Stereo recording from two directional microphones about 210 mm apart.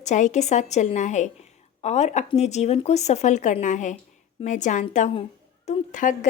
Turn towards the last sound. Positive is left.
turn(degrees=35)  # may be behind; listen again after turning